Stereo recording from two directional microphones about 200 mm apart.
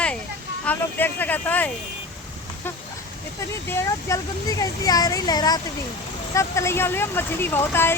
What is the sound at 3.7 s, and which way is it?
Speech, 15° left (ahead or behind).